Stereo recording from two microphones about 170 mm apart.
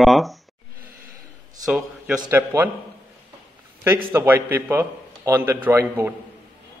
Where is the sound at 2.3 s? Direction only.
10° right (ahead or behind).